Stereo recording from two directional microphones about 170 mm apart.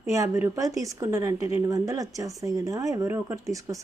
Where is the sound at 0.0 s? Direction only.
15° right (ahead or behind).